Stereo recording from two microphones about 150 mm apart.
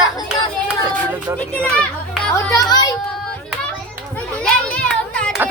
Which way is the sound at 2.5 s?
25° left (ahead or behind).